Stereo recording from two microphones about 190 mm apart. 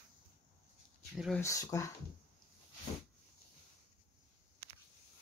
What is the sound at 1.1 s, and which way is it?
Speech, centre (ahead or behind).